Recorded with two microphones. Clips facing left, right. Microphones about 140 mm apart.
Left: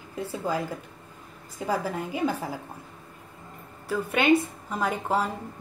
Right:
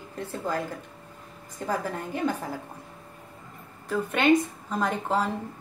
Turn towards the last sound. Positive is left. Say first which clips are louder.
# even
turn(degrees=5)  # may be behind; listen again after turning